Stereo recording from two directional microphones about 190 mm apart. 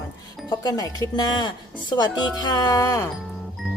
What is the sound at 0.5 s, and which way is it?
Speech, 20° left (ahead or behind).